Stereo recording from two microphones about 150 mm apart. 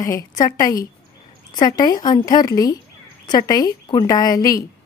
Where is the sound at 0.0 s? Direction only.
25° left (ahead or behind).